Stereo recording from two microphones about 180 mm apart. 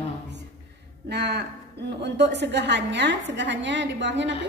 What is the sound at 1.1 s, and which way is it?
A woman's voice, 70° right (ahead or behind).